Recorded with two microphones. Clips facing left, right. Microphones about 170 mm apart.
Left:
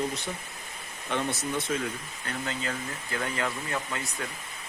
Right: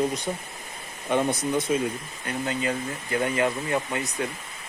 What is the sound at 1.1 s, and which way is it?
Speech, 15° right (ahead or behind).